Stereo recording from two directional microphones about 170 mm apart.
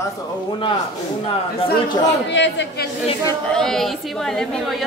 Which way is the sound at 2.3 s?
90° left.